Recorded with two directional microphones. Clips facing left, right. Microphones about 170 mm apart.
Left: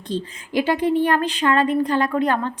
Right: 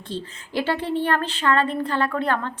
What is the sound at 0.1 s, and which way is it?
Speech, 15° left (ahead or behind).